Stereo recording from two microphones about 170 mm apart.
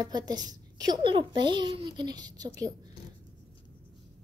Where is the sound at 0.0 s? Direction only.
25° right (ahead or behind).